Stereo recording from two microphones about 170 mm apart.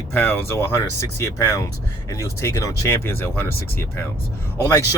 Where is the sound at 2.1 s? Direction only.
15° left (ahead or behind).